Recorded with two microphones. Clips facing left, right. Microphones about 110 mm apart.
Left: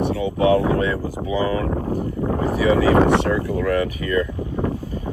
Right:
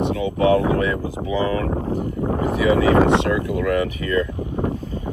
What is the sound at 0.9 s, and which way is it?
Speech, 20° right (ahead or behind).